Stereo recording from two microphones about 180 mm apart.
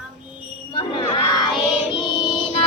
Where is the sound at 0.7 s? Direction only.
25° left (ahead or behind).